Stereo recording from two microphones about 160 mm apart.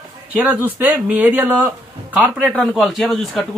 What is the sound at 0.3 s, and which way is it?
A man's voice, 10° right (ahead or behind).